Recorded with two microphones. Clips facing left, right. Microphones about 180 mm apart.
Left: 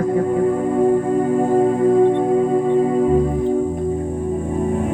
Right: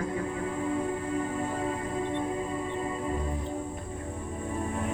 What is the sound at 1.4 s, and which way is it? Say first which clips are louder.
Music: left 15 dB; 50° left (ahead or behind).